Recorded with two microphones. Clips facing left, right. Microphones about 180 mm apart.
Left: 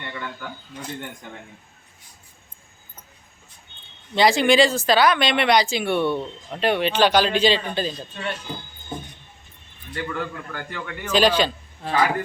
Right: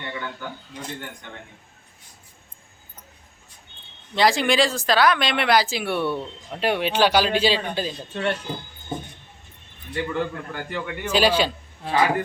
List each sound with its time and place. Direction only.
4.1 s a man's voice: centre (ahead or behind)
8.1 s speech: 60° right (ahead or behind)
9.9 s a man's voice: 20° right (ahead or behind)